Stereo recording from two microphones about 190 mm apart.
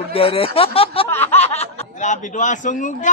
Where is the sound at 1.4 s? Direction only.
35° left (ahead or behind).